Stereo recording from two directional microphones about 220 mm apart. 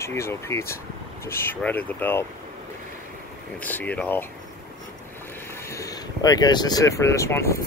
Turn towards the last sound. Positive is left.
turn(degrees=10)  # may be behind; listen again after turning